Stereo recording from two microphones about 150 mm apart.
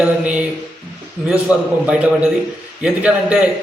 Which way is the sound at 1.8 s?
10° right (ahead or behind).